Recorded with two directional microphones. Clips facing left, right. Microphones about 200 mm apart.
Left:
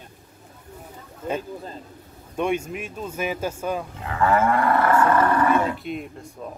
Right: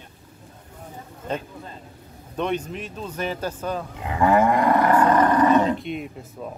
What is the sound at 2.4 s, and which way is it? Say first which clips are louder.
Speech: left 1 dB; 10° left (ahead or behind).